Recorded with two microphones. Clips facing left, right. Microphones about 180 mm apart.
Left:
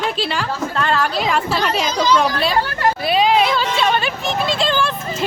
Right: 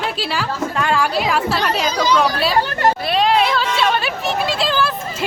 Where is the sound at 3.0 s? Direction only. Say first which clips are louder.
Left 5 dB; centre (ahead or behind).